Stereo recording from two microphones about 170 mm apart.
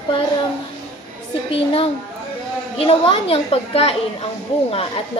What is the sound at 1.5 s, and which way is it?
A woman's voice, 35° left (ahead or behind).